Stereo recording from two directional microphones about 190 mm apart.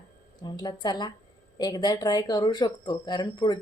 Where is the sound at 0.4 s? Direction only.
20° left (ahead or behind).